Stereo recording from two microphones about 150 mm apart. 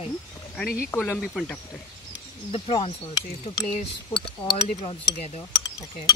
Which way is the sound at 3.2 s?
25° left (ahead or behind).